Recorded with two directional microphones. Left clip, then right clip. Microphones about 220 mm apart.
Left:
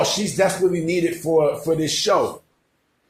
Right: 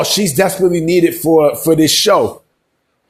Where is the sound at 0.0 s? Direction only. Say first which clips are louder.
Right 6 dB; 45° right (ahead or behind).